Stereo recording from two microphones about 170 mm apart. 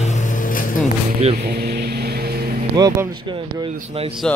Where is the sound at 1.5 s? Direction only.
70° right (ahead or behind).